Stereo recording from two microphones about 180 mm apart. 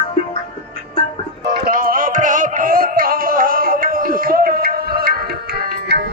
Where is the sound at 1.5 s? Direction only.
55° right (ahead or behind).